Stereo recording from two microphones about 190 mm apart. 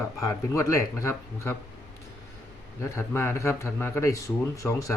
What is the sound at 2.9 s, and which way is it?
Speech, 10° left (ahead or behind).